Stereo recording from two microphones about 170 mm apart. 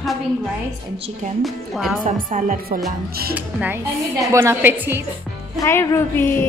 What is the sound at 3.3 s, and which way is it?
A woman's voice, 10° right (ahead or behind).